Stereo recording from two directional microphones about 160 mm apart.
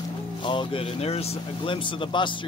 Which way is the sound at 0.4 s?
30° left (ahead or behind).